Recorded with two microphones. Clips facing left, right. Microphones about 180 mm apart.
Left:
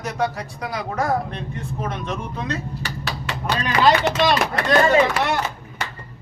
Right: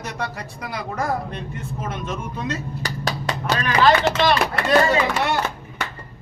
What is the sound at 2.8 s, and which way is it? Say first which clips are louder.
Hammer: right 3 dB; 40° right (ahead or behind).